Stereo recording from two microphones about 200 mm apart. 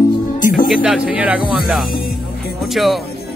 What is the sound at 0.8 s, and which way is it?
Speech, 5° right (ahead or behind).